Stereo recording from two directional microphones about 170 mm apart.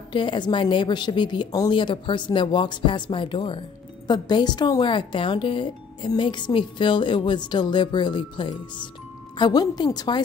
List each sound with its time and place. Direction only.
0.1 s speech: 30° left (ahead or behind)